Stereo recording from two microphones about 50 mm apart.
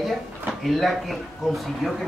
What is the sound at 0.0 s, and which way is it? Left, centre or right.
A woman's voice, centre.